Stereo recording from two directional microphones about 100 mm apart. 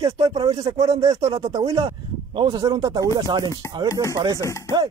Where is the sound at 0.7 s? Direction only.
50° right (ahead or behind).